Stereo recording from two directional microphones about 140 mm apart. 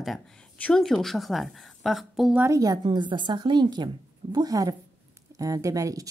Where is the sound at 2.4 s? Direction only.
25° right (ahead or behind).